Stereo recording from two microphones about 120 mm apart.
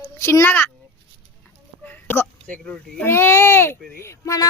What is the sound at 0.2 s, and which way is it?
Speech, 20° left (ahead or behind).